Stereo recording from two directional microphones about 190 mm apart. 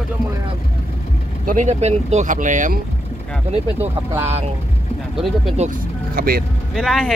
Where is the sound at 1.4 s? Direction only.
40° right (ahead or behind).